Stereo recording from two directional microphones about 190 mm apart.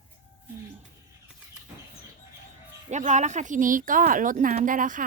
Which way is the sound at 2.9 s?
40° right (ahead or behind).